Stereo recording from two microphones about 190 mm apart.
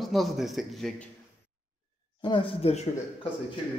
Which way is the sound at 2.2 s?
25° left (ahead or behind).